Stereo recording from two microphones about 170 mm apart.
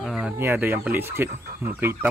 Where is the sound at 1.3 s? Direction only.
50° right (ahead or behind).